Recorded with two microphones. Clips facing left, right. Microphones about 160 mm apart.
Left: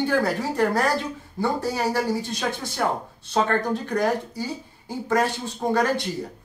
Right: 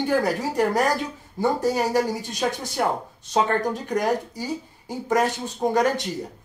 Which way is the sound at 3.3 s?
15° right (ahead or behind).